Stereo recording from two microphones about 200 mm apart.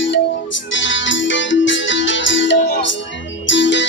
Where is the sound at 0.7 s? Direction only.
65° left (ahead or behind).